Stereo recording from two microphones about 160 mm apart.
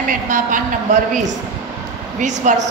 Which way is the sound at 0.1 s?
55° right (ahead or behind).